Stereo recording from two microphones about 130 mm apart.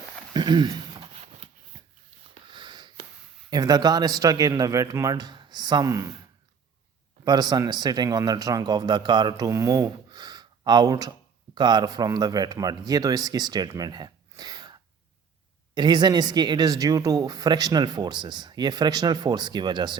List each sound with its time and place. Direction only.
0.3 s speech: 35° right (ahead or behind)
1.7 s a sound: 35° right (ahead or behind)
3.5 s a man's voice: 30° right (ahead or behind)
7.3 s speech: 30° right (ahead or behind)